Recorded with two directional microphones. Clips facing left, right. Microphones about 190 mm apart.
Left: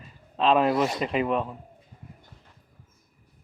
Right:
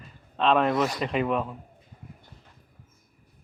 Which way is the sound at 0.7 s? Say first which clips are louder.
Left 1 dB; 30° left (ahead or behind).